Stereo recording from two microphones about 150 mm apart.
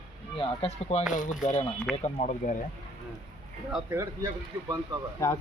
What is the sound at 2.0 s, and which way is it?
Speech, 50° left (ahead or behind).